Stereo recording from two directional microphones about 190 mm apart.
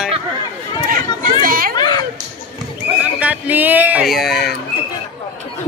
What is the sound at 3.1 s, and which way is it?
Speech, 5° right (ahead or behind).